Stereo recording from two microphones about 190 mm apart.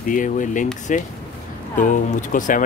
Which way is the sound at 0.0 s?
45° left (ahead or behind).